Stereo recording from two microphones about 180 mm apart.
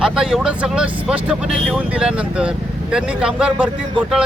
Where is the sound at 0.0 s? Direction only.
5° right (ahead or behind).